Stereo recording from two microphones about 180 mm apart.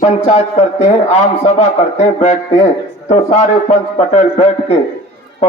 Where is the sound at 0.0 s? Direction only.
35° left (ahead or behind).